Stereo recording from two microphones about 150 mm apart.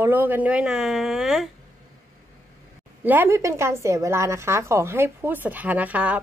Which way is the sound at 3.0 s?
15° right (ahead or behind).